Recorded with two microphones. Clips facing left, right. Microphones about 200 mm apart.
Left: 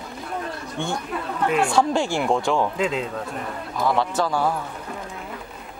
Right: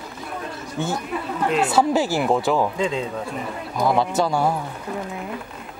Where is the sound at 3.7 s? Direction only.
15° right (ahead or behind).